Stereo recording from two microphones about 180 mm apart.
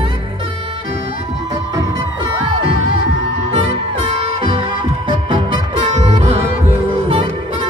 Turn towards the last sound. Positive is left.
turn(degrees=-30)  # may be behind; listen again after turning